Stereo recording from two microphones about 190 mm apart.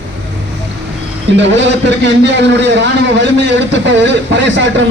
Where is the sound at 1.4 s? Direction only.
70° right (ahead or behind).